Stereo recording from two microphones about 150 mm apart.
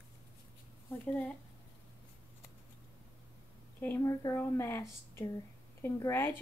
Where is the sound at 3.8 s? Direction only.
15° left (ahead or behind).